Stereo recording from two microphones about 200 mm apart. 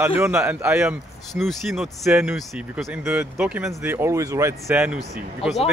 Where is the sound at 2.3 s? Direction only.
Centre (ahead or behind).